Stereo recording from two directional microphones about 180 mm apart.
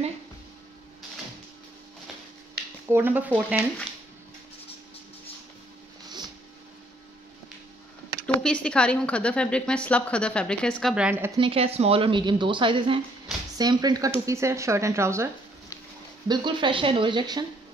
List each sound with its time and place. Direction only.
2.9 s speech: 10° right (ahead or behind)
8.3 s a woman's voice: 5° left (ahead or behind)
11.1 s speech: 10° right (ahead or behind)
11.3 s speech: 30° right (ahead or behind); by 15.3 s 15° right (ahead or behind)
16.3 s speech: 25° right (ahead or behind)